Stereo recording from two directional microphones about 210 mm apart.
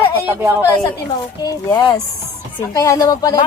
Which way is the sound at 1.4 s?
15° left (ahead or behind).